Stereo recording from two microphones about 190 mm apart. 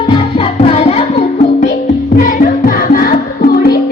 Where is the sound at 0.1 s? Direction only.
30° left (ahead or behind).